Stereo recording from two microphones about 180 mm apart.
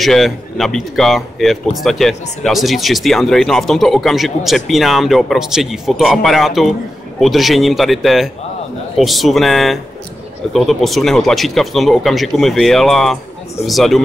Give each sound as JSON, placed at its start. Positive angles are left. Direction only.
{"t": 0.0, "sound": "a man's voice", "side_deg": 0}